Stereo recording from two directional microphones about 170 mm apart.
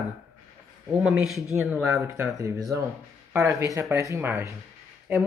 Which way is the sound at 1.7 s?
5° right (ahead or behind).